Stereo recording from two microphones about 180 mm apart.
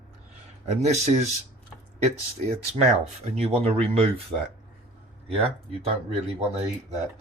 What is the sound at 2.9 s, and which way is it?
Speech, 35° right (ahead or behind).